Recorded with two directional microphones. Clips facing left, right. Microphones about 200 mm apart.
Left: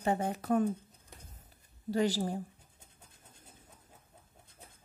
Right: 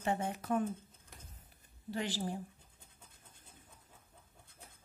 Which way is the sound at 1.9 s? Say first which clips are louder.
Left 7 dB; 40° left (ahead or behind).